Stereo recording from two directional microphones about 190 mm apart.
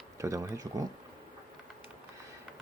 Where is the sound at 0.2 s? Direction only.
15° right (ahead or behind).